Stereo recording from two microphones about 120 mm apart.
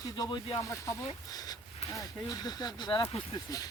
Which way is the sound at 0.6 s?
25° left (ahead or behind).